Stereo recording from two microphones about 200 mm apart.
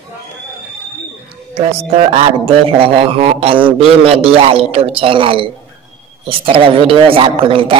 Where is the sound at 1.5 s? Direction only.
30° right (ahead or behind).